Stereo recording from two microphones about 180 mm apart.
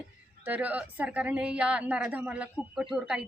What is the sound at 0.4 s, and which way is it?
Speech, 10° right (ahead or behind).